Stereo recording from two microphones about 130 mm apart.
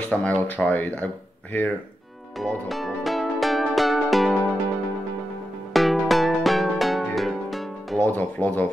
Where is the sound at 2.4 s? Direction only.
Centre (ahead or behind).